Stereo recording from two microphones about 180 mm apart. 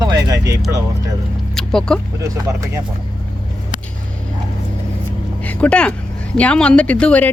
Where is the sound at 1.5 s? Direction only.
5° left (ahead or behind).